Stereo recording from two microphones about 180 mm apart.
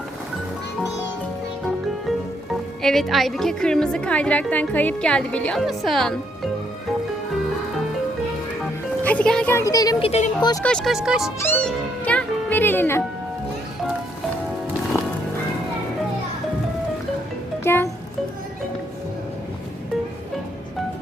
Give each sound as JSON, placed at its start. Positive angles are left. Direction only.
{"t": 2.8, "sound": "a woman's voice", "side_deg": 0}
{"t": 9.0, "sound": "speech", "side_deg": 5}
{"t": 10.1, "sound": "speech", "side_deg": 40}
{"t": 10.6, "sound": "a woman's voice", "side_deg": 5}
{"t": 11.3, "sound": "music", "side_deg": 10}
{"t": 17.6, "sound": "music", "side_deg": 10}